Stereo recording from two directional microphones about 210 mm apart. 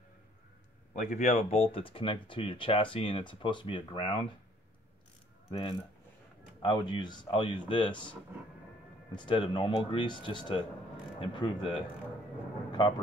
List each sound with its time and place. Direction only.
0.9 s speech: 35° left (ahead or behind)
5.5 s speech: 25° left (ahead or behind)
9.1 s speech: 20° left (ahead or behind)